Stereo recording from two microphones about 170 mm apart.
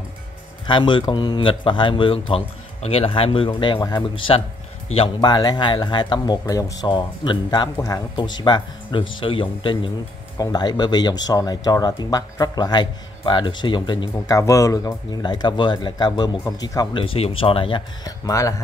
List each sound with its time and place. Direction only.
0.7 s a man's voice: 30° left (ahead or behind)